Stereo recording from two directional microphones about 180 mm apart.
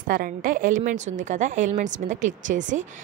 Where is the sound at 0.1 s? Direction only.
50° right (ahead or behind).